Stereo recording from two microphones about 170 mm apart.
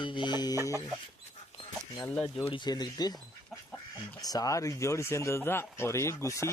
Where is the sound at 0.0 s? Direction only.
30° left (ahead or behind).